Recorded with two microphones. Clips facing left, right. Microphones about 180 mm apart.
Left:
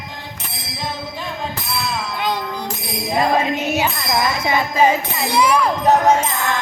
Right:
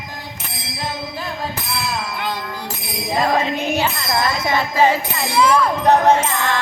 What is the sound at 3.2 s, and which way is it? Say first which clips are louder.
Music: left 1 dB; 10° left (ahead or behind).